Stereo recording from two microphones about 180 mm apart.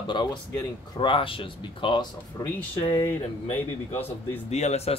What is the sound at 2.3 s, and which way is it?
Speech, 15° left (ahead or behind).